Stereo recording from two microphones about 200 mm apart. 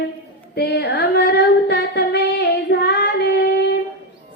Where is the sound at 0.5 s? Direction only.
55° left (ahead or behind).